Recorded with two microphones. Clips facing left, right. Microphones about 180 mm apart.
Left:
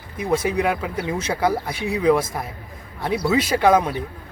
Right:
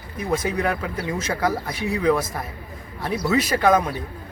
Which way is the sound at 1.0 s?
25° left (ahead or behind).